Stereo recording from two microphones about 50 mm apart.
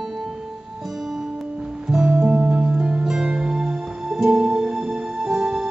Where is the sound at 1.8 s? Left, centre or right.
Centre.